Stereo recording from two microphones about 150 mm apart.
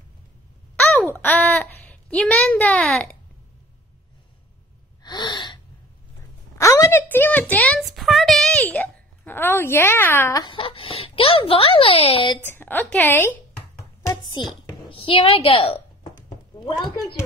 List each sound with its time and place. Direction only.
0.7 s a child's voice: 10° left (ahead or behind)
5.0 s gasp: 30° left (ahead or behind)
6.6 s speech: 20° left (ahead or behind)
7.8 s a sound: centre (ahead or behind)
8.6 s a child's voice: 10° left (ahead or behind)
10.4 s speech: 35° left (ahead or behind)
12.4 s speech: 15° left (ahead or behind)
14.3 s a woman's voice: 35° left (ahead or behind)